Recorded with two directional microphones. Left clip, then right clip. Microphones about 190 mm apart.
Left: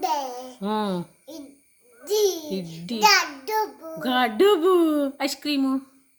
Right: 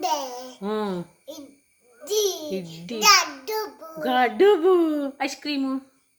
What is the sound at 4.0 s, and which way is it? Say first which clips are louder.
Speech: right 1 dB; 25° left (ahead or behind).